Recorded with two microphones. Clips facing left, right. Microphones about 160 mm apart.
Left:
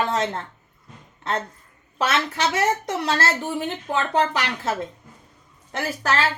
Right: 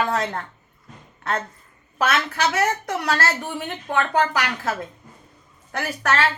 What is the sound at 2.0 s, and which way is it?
Speech, 25° left (ahead or behind).